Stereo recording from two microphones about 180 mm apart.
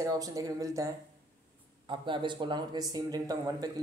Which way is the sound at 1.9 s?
25° right (ahead or behind).